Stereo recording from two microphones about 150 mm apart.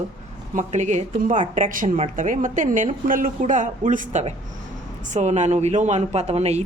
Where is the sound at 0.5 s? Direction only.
50° right (ahead or behind).